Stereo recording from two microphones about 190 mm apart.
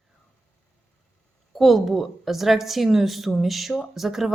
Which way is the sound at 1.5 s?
Centre (ahead or behind).